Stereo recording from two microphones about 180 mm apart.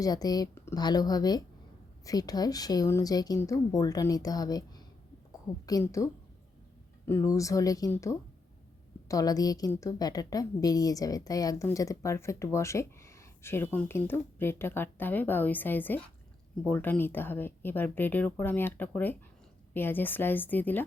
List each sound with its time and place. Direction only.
0.0 s a woman's voice: 20° left (ahead or behind)
5.6 s a woman's voice: 20° left (ahead or behind)